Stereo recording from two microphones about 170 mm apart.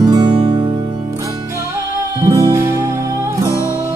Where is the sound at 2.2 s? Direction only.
20° right (ahead or behind).